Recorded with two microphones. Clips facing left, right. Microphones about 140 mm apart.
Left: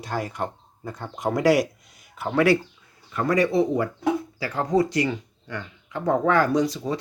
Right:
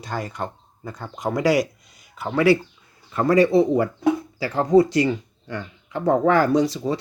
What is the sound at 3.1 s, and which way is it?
Speech, 30° right (ahead or behind).